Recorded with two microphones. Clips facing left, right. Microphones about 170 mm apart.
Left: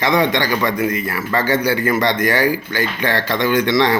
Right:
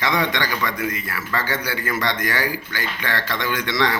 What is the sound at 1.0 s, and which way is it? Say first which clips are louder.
A man's voice: left 7 dB; 45° left (ahead or behind).